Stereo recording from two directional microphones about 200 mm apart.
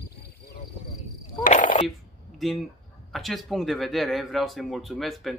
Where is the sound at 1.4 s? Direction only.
40° left (ahead or behind).